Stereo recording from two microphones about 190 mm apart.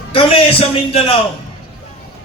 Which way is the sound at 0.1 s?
30° left (ahead or behind).